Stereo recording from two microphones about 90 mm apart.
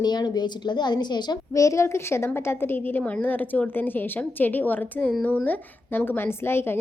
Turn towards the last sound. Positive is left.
turn(degrees=25)  # may be behind; listen again after turning